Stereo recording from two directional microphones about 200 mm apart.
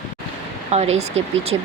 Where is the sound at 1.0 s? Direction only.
35° right (ahead or behind).